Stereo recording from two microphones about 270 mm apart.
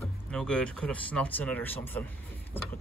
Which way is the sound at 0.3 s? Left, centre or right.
Centre.